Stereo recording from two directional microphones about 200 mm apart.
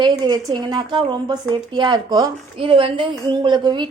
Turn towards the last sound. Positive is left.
turn(degrees=-20)  # may be behind; listen again after turning